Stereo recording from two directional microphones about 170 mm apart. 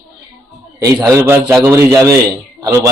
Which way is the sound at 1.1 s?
15° right (ahead or behind).